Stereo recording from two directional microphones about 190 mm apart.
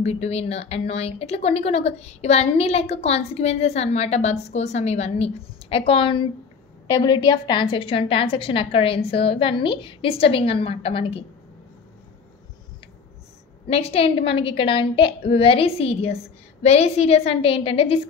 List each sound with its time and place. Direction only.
0.0 s a woman's voice: 35° left (ahead or behind)
13.7 s a woman's voice: 30° left (ahead or behind)